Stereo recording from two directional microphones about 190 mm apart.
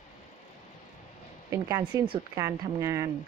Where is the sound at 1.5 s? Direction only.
15° right (ahead or behind).